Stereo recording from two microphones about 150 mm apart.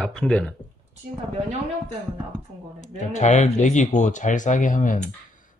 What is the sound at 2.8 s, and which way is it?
Speech, 50° left (ahead or behind).